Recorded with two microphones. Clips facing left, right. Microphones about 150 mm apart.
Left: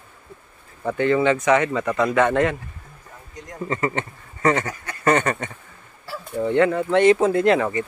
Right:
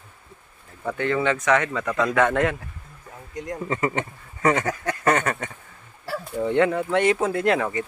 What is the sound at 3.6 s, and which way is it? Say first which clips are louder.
Speech: left 2 dB; 10° right (ahead or behind).